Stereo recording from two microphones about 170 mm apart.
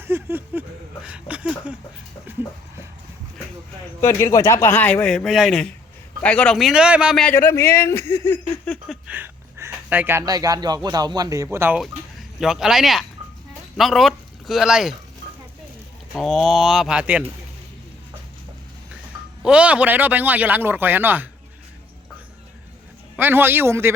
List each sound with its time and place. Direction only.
0.0 s a sound: 15° right (ahead or behind)
4.0 s a man's voice: 15° left (ahead or behind); by 7.3 s 5° right (ahead or behind)
7.3 s a man's voice: 15° left (ahead or behind)
8.7 s a sound: 5° right (ahead or behind); by 10.8 s 25° right (ahead or behind)
10.8 s a man's voice: 25° right (ahead or behind)
12.4 s speech: 5° right (ahead or behind)
16.1 s speech: centre (ahead or behind)
19.4 s a man's voice: 5° right (ahead or behind)
23.1 s a man's voice: 10° right (ahead or behind)